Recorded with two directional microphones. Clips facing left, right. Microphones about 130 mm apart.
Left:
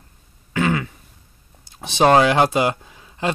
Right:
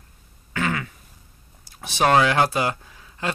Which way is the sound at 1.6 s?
20° left (ahead or behind).